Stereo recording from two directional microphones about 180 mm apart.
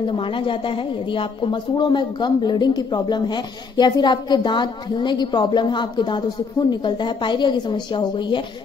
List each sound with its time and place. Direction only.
0.1 s speech: 30° left (ahead or behind)